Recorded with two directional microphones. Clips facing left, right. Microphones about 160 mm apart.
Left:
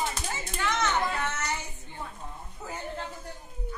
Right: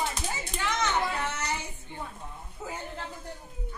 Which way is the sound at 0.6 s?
10° right (ahead or behind).